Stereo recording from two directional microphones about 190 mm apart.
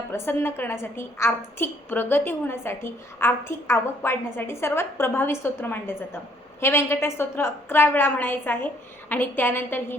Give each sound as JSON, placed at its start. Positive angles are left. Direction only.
{"t": 0.1, "sound": "a woman's voice", "side_deg": 10}